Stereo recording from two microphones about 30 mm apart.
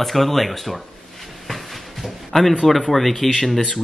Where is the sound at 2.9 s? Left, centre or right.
Centre.